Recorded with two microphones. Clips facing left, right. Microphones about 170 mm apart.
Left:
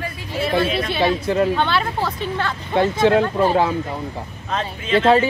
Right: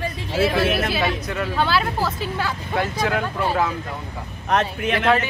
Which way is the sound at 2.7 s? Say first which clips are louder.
Left 8 dB; 25° left (ahead or behind).